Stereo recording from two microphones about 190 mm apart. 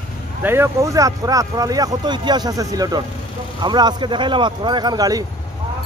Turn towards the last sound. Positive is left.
turn(degrees=-20)  # may be behind; listen again after turning